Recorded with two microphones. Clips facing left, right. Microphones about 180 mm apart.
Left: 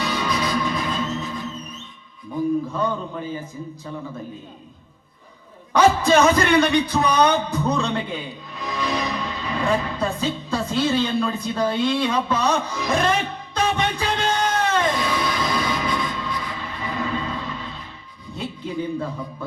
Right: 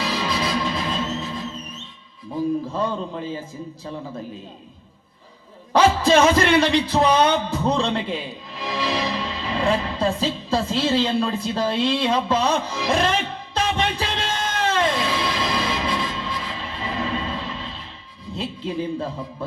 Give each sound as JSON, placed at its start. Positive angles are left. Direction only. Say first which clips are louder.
{"t": 0.0, "sound": "music", "louder": "even", "side_deg": -30}
{"t": 2.3, "sound": "a man's voice", "louder": "left 1 dB", "side_deg": -30}
{"t": 6.1, "sound": "music", "louder": "even", "side_deg": -30}
{"t": 14.7, "sound": "a sound", "louder": "even", "side_deg": -30}
{"t": 18.3, "sound": "music", "louder": "right 1 dB", "side_deg": -30}